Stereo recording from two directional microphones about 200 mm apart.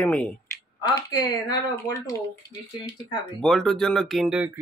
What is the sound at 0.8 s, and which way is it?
Speech, 20° left (ahead or behind).